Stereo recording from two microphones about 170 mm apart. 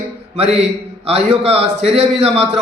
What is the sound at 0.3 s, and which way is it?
A man's voice, 40° right (ahead or behind).